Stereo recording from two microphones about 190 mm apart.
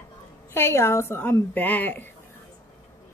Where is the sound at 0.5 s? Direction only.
15° left (ahead or behind).